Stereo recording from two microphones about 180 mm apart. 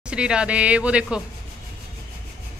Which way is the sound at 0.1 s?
5° right (ahead or behind).